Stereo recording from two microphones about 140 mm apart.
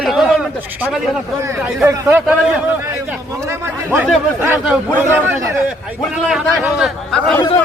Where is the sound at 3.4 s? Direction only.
15° right (ahead or behind).